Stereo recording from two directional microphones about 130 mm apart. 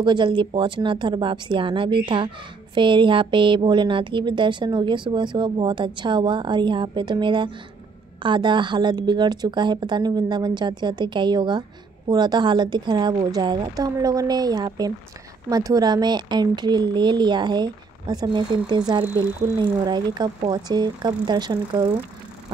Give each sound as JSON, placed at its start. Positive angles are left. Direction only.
{"t": 0.0, "sound": "speech", "side_deg": -35}